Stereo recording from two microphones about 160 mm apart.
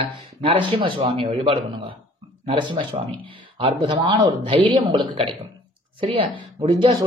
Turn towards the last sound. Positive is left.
turn(degrees=-35)  # may be behind; listen again after turning